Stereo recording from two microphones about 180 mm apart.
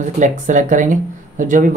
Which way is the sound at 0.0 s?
45° right (ahead or behind).